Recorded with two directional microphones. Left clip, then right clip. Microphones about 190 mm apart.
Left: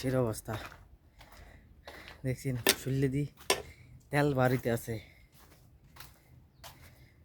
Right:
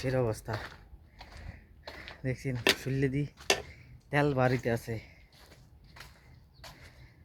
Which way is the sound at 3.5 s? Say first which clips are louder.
Right 3 dB; 15° left (ahead or behind).